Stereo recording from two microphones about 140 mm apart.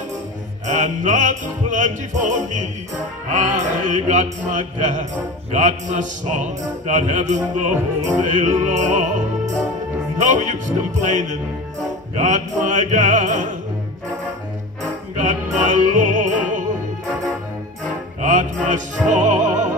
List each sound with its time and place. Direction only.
0.7 s music: 65° right (ahead or behind)
10.1 s music: 65° right (ahead or behind)
15.1 s music: 65° right (ahead or behind)
18.2 s opera: 65° right (ahead or behind)